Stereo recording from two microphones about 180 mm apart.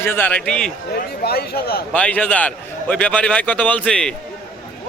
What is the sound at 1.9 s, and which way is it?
A man's voice, 5° left (ahead or behind).